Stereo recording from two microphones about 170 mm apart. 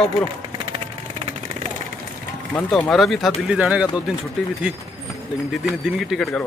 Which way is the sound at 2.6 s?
5° left (ahead or behind).